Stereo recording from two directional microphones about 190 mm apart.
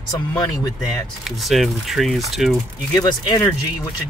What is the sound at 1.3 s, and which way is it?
Speech, centre (ahead or behind).